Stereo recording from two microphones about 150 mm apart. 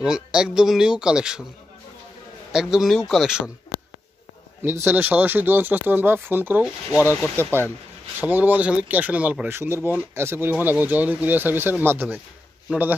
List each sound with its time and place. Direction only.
0.0 s speech: 5° right (ahead or behind)
2.5 s speech: 5° right (ahead or behind)
4.6 s a man's voice: 15° right (ahead or behind)